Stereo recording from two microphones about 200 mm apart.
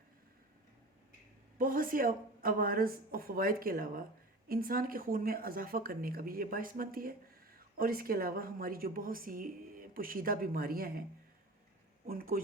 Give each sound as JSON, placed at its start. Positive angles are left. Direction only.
{"t": 1.5, "sound": "speech", "side_deg": -45}
{"t": 12.0, "sound": "speech", "side_deg": -45}